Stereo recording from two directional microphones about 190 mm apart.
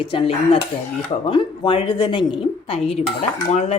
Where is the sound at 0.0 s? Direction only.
30° left (ahead or behind).